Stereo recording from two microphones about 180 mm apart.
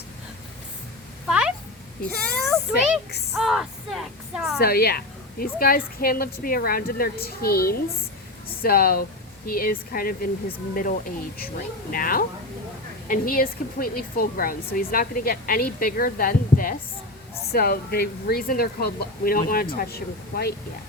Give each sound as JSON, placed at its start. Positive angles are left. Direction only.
{"t": 1.3, "sound": "a sound", "side_deg": -5}
{"t": 2.0, "sound": "speech", "side_deg": 0}
{"t": 4.6, "sound": "a woman's voice", "side_deg": 60}